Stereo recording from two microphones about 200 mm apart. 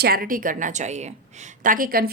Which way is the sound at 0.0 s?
50° right (ahead or behind).